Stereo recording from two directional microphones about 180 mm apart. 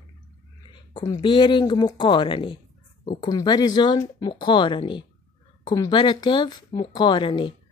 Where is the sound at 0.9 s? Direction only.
25° left (ahead or behind).